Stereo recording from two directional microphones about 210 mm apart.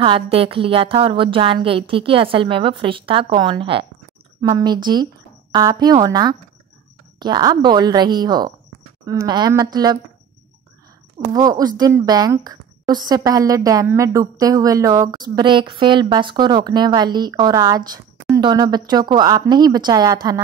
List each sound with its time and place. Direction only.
0.0 s a woman's voice: 25° right (ahead or behind)
11.3 s a woman's voice: 15° right (ahead or behind)